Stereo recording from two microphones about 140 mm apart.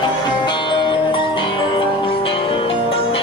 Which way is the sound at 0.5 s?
35° left (ahead or behind).